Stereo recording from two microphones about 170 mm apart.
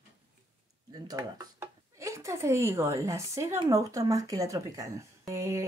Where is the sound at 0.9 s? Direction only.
20° right (ahead or behind).